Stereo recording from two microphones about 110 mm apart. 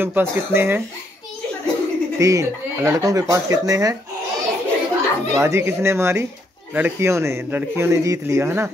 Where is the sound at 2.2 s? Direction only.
30° right (ahead or behind).